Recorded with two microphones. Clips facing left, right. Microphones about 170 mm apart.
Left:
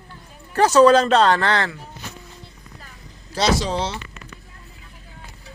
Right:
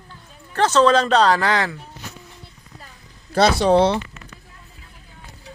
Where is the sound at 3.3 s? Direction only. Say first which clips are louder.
Right 6 dB; 60° right (ahead or behind).